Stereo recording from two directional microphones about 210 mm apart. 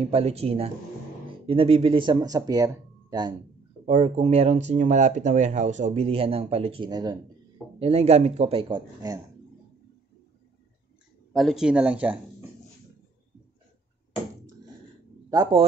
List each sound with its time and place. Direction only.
0.1 s speech: 30° right (ahead or behind)
3.8 s speech: 30° right (ahead or behind)
7.8 s speech: 30° right (ahead or behind)
11.3 s speech: centre (ahead or behind)
15.2 s speech: 20° right (ahead or behind)